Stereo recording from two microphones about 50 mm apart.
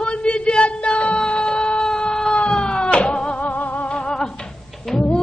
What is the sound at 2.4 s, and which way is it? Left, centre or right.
Cat, centre.